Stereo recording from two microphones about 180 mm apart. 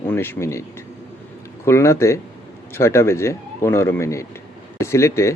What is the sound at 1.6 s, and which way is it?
Speech, 15° left (ahead or behind).